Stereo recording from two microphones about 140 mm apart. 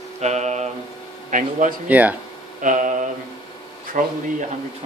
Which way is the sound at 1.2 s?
65° right (ahead or behind).